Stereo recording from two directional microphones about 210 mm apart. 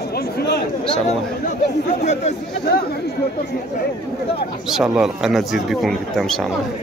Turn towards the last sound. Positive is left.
turn(degrees=0)  # may be behind; listen again after turning